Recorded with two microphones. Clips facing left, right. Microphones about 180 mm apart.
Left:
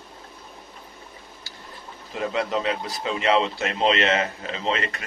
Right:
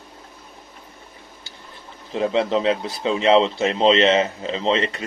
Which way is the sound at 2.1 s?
30° right (ahead or behind).